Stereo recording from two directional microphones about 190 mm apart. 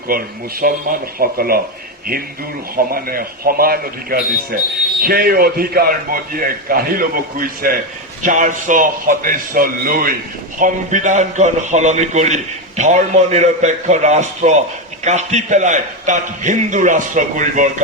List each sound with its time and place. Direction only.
0.6 s a man's voice: 50° right (ahead or behind)
2.7 s a man's voice: 50° right (ahead or behind)